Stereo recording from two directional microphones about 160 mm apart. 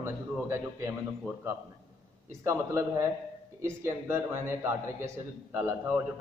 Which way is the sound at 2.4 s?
20° right (ahead or behind).